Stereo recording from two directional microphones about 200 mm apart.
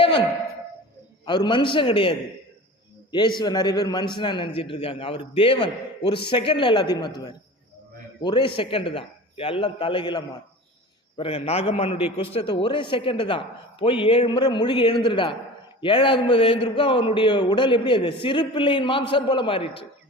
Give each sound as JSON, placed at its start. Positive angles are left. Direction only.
{"t": 1.2, "sound": "a man's voice", "side_deg": 20}